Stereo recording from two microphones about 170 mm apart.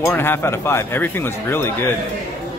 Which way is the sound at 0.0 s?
10° left (ahead or behind).